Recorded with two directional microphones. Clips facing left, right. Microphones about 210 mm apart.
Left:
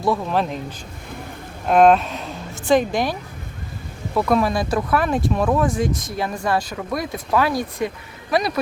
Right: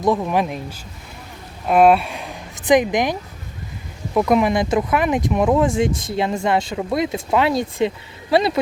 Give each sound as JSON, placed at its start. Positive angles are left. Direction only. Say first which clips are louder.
{"t": 0.0, "sound": "speech", "louder": "right 2 dB", "side_deg": -15}
{"t": 1.6, "sound": "a woman's voice", "louder": "even", "side_deg": -5}